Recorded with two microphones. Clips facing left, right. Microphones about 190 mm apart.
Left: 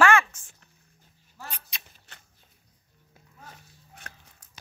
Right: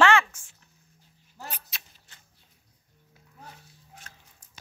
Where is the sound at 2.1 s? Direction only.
70° left (ahead or behind).